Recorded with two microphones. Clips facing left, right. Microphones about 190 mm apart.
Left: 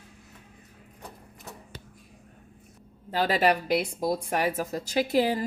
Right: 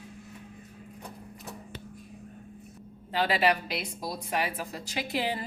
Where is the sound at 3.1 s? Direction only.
40° left (ahead or behind).